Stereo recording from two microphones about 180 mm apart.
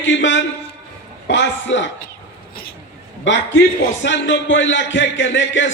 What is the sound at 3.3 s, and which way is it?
Speech, 90° left.